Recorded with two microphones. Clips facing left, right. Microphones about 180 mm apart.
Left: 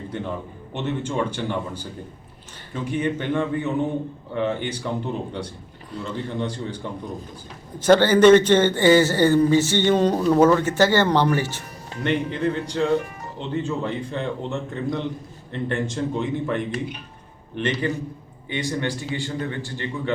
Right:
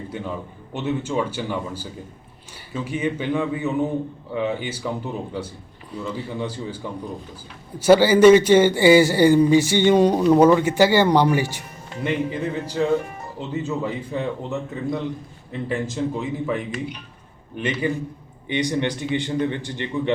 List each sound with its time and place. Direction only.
0.1 s a man's voice: 10° right (ahead or behind)
5.9 s a man's voice: 10° right (ahead or behind)